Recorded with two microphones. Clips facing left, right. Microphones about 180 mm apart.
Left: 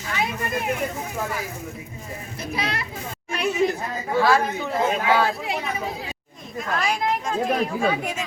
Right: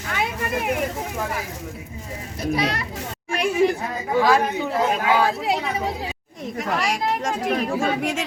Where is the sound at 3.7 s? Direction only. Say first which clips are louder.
Right 2 dB; 15° right (ahead or behind).